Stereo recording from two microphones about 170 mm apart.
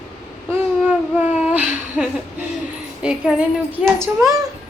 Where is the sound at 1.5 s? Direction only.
5° right (ahead or behind).